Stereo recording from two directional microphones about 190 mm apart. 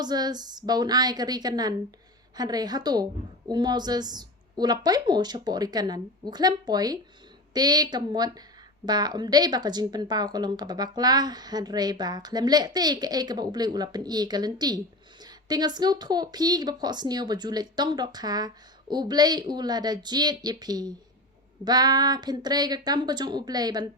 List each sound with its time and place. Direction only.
0.0 s speech: 20° right (ahead or behind)